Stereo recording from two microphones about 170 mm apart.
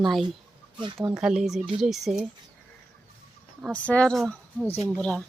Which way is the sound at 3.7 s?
5° left (ahead or behind).